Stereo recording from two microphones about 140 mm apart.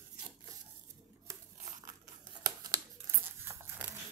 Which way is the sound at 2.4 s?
25° right (ahead or behind).